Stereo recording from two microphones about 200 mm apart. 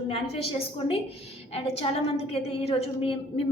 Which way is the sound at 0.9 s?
30° left (ahead or behind).